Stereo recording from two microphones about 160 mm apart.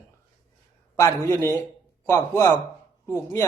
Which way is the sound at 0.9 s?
20° left (ahead or behind).